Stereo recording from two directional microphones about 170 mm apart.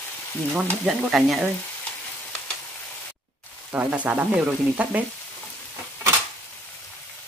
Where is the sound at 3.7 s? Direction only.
10° right (ahead or behind).